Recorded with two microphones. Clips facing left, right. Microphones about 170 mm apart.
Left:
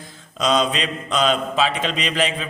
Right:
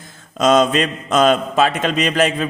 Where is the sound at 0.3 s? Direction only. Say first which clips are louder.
Right 6 dB; 50° right (ahead or behind).